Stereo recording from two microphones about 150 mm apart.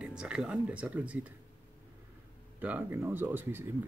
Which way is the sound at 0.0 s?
5° right (ahead or behind).